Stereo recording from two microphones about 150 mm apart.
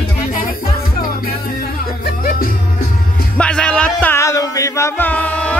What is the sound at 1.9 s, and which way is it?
Music, 85° left.